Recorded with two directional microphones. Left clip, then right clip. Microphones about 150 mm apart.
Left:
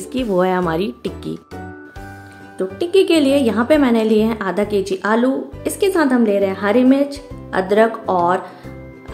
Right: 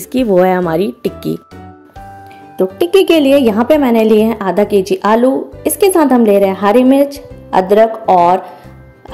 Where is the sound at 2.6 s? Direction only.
40° right (ahead or behind); by 8.4 s 25° right (ahead or behind).